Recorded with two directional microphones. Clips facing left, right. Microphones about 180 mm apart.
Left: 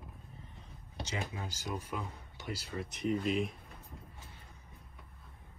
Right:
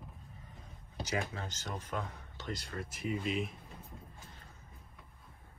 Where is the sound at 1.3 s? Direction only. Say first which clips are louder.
Left 2 dB; 10° left (ahead or behind).